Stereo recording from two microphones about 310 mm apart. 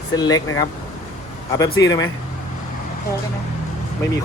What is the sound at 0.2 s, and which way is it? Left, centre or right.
Speech, centre.